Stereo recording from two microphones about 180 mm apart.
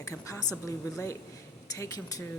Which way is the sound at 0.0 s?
15° left (ahead or behind).